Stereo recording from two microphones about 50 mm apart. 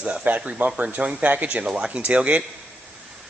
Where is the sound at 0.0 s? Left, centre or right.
Right.